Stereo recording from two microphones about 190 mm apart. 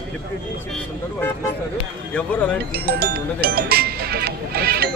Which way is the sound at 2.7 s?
55° right (ahead or behind).